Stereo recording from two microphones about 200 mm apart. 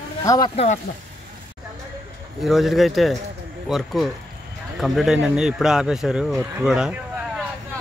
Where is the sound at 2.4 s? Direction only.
Centre (ahead or behind).